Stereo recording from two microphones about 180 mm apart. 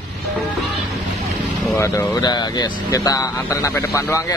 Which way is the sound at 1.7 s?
15° left (ahead or behind).